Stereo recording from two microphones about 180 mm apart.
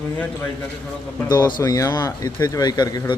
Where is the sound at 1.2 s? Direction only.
25° left (ahead or behind).